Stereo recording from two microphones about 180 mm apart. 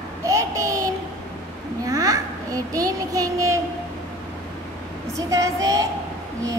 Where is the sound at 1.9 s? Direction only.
20° right (ahead or behind).